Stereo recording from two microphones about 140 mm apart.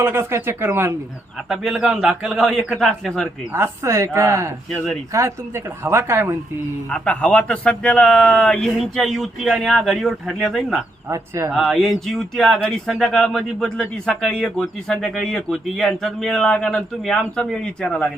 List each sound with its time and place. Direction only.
0.0 s speech: 20° right (ahead or behind)
1.5 s speech: centre (ahead or behind)
3.5 s a woman's voice: 20° right (ahead or behind)
6.9 s speech: 10° left (ahead or behind)
11.1 s a woman's voice: 20° right (ahead or behind)
11.5 s speech: centre (ahead or behind)